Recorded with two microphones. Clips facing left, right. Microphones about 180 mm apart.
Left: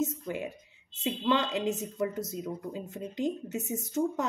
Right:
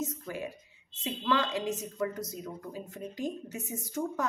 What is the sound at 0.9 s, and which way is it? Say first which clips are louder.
Speech: left 2 dB; 25° left (ahead or behind).